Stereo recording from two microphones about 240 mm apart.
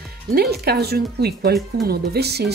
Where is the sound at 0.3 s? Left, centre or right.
Right.